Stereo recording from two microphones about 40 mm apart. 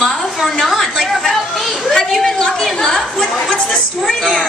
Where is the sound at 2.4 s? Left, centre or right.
Centre.